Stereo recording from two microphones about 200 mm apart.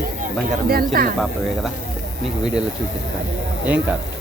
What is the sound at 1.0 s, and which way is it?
Speech, 45° right (ahead or behind).